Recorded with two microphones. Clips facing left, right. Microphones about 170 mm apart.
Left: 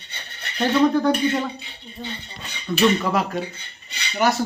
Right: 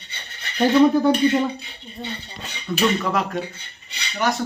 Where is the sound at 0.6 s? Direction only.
10° right (ahead or behind).